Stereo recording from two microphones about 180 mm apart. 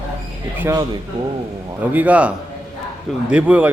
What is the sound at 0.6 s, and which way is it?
A man's voice, 15° right (ahead or behind).